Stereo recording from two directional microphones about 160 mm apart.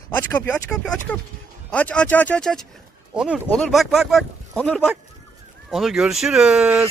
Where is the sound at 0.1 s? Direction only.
10° left (ahead or behind).